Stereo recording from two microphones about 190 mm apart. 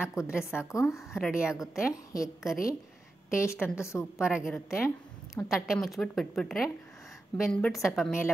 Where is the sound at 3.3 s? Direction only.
15° left (ahead or behind).